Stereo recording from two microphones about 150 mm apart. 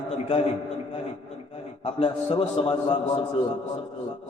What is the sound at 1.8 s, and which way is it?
Speech, 40° left (ahead or behind).